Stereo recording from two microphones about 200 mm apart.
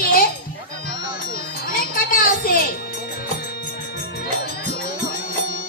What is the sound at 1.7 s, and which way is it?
Wind chime, 45° left (ahead or behind).